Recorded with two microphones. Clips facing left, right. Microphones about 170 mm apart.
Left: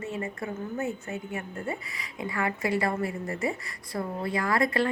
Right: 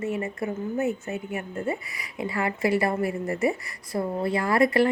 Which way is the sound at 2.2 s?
25° right (ahead or behind).